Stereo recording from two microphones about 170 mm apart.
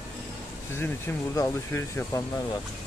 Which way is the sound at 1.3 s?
15° left (ahead or behind).